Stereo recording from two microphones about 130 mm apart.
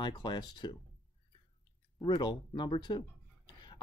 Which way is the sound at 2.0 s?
35° left (ahead or behind).